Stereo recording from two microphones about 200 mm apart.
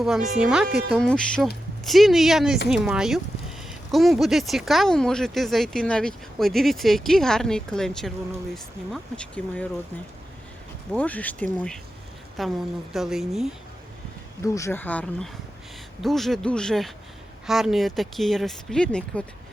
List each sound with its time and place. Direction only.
0.0 s speech: centre (ahead or behind)
0.7 s speech: 55° right (ahead or behind)
0.9 s speech: 5° left (ahead or behind)
10.9 s speech: 10° left (ahead or behind)
14.4 s speech: 15° left (ahead or behind)